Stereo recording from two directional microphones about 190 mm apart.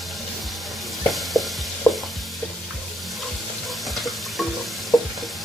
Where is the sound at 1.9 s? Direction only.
5° left (ahead or behind).